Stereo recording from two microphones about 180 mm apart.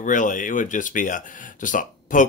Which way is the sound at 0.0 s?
45° left (ahead or behind).